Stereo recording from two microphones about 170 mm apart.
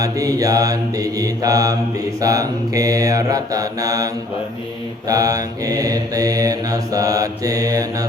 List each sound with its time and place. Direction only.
0.0 s mantra: 20° right (ahead or behind)